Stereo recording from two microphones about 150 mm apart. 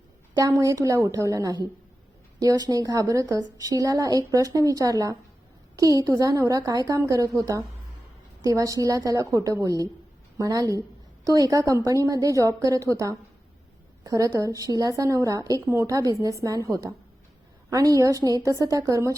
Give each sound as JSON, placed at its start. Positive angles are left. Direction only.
{"t": 0.3, "sound": "a woman's voice", "side_deg": -25}